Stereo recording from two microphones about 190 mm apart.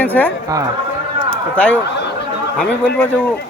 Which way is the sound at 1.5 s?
5° left (ahead or behind).